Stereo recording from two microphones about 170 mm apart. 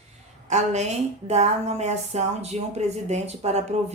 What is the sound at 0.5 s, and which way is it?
Speech, 40° right (ahead or behind).